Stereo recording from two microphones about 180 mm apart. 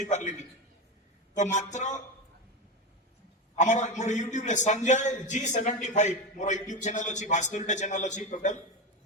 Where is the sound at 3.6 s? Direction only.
40° left (ahead or behind).